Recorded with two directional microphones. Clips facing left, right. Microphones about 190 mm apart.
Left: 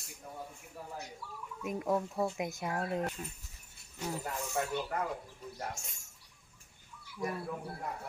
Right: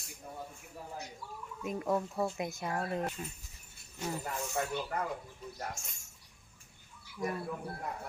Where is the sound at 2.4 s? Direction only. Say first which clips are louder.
Even; 15° left (ahead or behind).